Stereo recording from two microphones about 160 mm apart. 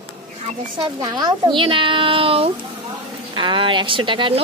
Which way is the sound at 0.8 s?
25° right (ahead or behind).